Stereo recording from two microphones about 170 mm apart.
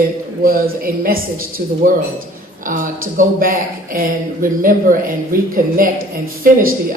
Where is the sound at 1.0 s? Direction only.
60° right (ahead or behind).